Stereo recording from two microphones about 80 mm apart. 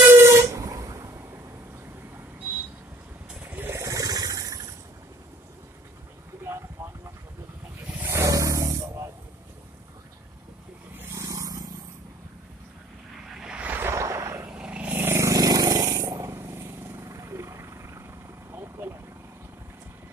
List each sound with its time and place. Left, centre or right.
0.2 s vehicle horn: right
3.3 s vehicle: right
3.7 s a sound: right
6.8 s a sound: right
7.8 s vehicle: centre
8.1 s snake: right
11.1 s vehicle: right
13.3 s vehicle: centre
13.7 s a sound: right
14.5 s vehicle: centre